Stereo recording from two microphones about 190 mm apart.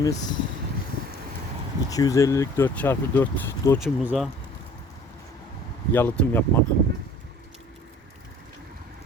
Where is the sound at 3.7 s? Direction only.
5° right (ahead or behind).